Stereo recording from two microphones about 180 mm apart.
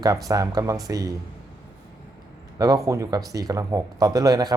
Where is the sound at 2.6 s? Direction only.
20° right (ahead or behind).